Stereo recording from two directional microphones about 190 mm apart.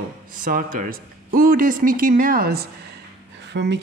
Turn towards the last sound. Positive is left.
turn(degrees=-65)  # may be behind; listen again after turning